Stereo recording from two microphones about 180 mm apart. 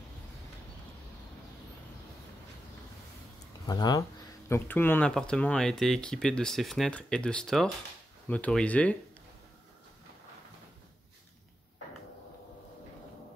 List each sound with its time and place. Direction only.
3.6 s speech: 20° left (ahead or behind)